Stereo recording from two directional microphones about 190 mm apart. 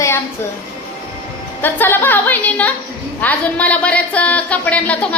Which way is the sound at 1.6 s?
10° left (ahead or behind).